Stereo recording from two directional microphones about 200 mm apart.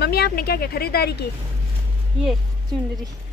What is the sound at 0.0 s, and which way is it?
Speech, 50° left (ahead or behind).